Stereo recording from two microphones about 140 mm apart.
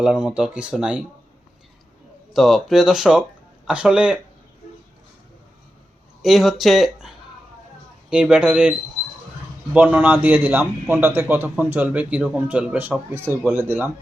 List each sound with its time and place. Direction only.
0.0 s speech: 5° right (ahead or behind)
2.3 s speech: centre (ahead or behind)
6.2 s speech: centre (ahead or behind)
8.1 s speech: 5° right (ahead or behind)
9.7 s speech: 10° right (ahead or behind)